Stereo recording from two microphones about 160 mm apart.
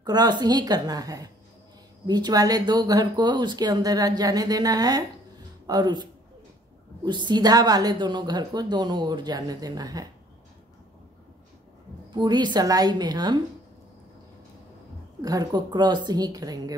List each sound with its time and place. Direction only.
0.0 s a woman's voice: 25° right (ahead or behind)
7.1 s a woman's voice: 30° right (ahead or behind)
12.1 s a woman's voice: 30° right (ahead or behind)
15.2 s a woman's voice: 25° right (ahead or behind)